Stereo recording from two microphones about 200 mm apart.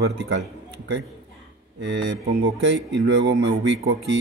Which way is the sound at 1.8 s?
65° right (ahead or behind).